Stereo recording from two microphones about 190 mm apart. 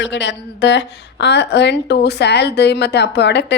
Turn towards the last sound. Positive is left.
turn(degrees=65)  # may be behind; listen again after turning